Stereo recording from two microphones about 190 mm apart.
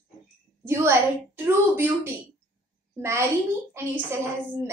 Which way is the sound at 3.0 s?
15° right (ahead or behind).